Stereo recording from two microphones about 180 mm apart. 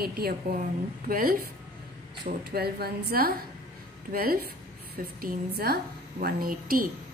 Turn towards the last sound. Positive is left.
turn(degrees=-55)  # may be behind; listen again after turning